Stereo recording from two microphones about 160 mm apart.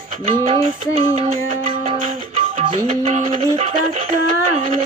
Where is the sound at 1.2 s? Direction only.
50° right (ahead or behind).